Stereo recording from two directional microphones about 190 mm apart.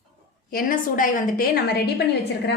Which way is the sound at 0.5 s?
50° left (ahead or behind).